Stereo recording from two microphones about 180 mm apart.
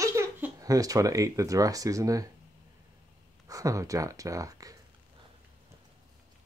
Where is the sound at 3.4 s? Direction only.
20° right (ahead or behind).